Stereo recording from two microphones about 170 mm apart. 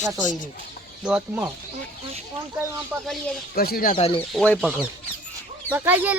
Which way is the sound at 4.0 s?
30° left (ahead or behind).